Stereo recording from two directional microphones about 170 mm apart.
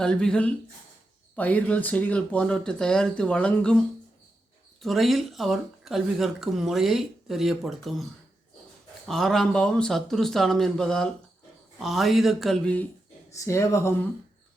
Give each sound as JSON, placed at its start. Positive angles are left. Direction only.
{"t": 0.0, "sound": "a woman's voice", "side_deg": 5}
{"t": 9.0, "sound": "a woman's voice", "side_deg": 0}